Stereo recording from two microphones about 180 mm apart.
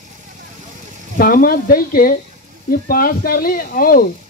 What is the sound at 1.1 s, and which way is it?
Speech, 55° left (ahead or behind).